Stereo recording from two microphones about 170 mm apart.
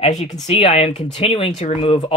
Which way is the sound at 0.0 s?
40° left (ahead or behind).